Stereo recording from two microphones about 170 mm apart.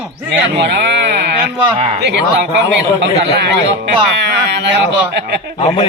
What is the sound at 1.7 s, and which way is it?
Speech, 30° right (ahead or behind).